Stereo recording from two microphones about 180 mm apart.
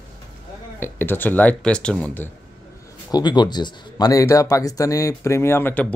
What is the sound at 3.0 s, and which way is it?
A man's voice, 25° left (ahead or behind).